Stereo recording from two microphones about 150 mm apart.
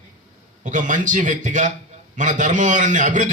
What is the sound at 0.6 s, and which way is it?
A man's voice, 55° right (ahead or behind).